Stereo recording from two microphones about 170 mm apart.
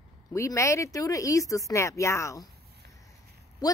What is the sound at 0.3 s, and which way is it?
Speech, 15° left (ahead or behind).